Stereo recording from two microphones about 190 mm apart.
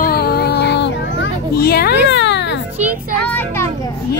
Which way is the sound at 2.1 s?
70° left (ahead or behind).